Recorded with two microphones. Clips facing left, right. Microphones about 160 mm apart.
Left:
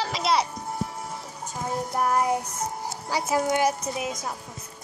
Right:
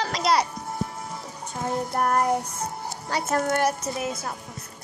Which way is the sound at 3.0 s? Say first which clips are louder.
Even; 10° left (ahead or behind).